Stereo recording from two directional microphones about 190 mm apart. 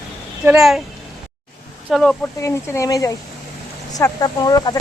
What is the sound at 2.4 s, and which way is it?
Speech, 15° left (ahead or behind).